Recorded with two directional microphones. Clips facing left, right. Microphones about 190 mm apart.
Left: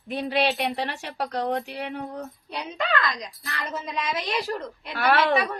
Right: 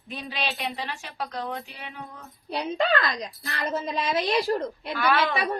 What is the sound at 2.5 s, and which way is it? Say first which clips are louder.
A woman's voice: right 5 dB; 35° right (ahead or behind).